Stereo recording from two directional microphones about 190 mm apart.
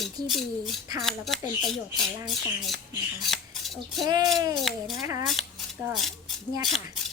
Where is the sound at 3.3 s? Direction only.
Centre (ahead or behind).